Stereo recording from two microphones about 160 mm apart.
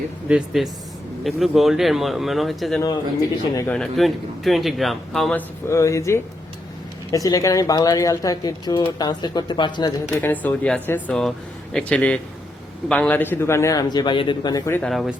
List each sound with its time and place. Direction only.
0.3 s speech: 5° right (ahead or behind)
5.6 s speech: 20° left (ahead or behind)
10.2 s speech: 10° left (ahead or behind); by 14.6 s 30° left (ahead or behind)
14.7 s speech: 5° left (ahead or behind)